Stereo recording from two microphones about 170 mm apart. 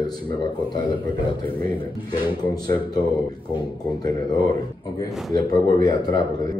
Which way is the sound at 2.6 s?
25° left (ahead or behind).